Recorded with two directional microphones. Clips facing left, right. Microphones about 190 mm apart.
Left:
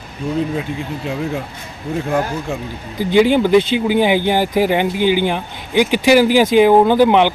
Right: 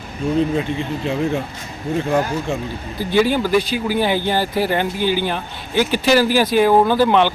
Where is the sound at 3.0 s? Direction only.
15° left (ahead or behind).